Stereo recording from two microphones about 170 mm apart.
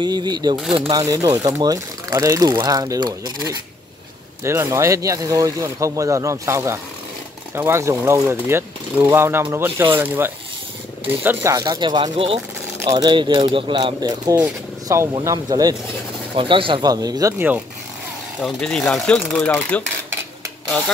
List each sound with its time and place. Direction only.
0.0 s speech: 25° right (ahead or behind)
18.4 s speech: 5° left (ahead or behind)